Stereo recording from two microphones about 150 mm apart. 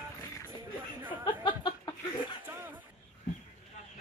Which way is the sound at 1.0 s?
15° right (ahead or behind).